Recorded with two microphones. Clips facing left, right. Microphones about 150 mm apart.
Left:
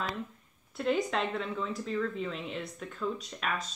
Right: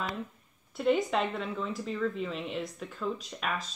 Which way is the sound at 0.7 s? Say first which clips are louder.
Right 3 dB; 5° right (ahead or behind).